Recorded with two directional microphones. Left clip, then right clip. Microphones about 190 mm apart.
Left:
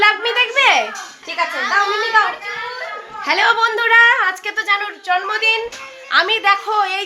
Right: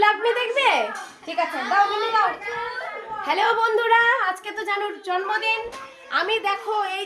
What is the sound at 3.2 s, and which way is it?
Speech, 10° left (ahead or behind).